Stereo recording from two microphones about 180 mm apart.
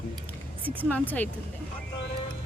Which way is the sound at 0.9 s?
10° left (ahead or behind).